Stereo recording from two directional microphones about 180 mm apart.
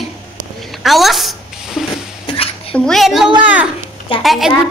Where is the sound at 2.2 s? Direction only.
30° left (ahead or behind).